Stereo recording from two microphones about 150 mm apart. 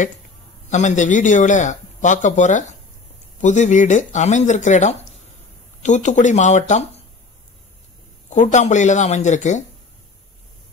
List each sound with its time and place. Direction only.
0.7 s speech: 55° left (ahead or behind)
8.3 s speech: 55° left (ahead or behind)